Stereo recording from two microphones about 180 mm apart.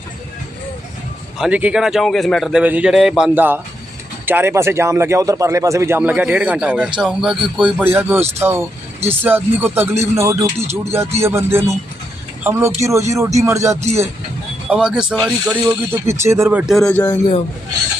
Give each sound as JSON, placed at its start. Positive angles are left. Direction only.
{"t": 1.4, "sound": "a man's voice", "side_deg": -5}
{"t": 10.6, "sound": "speech", "side_deg": -35}
{"t": 11.2, "sound": "a man's voice", "side_deg": -15}
{"t": 14.7, "sound": "a man's voice", "side_deg": -5}